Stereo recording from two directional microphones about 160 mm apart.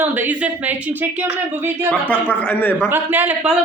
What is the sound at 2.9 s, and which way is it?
Speech, 10° right (ahead or behind).